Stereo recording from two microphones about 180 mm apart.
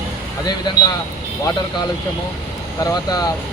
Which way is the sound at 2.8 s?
20° left (ahead or behind).